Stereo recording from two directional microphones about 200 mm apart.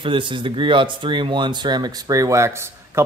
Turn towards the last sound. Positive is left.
turn(degrees=-15)  # may be behind; listen again after turning